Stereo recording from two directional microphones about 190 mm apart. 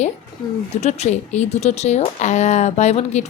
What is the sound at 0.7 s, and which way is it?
A woman's voice, 35° left (ahead or behind).